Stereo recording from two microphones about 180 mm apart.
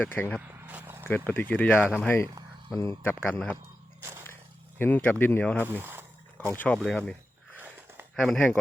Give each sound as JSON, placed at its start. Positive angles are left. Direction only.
{"t": 0.0, "sound": "speech", "side_deg": 10}
{"t": 0.7, "sound": "a sound", "side_deg": -10}
{"t": 1.0, "sound": "speech", "side_deg": 10}
{"t": 4.8, "sound": "speech", "side_deg": 10}
{"t": 5.6, "sound": "speech", "side_deg": -10}
{"t": 6.3, "sound": "speech", "side_deg": 10}
{"t": 7.5, "sound": "a sound", "side_deg": -10}
{"t": 8.2, "sound": "speech", "side_deg": 5}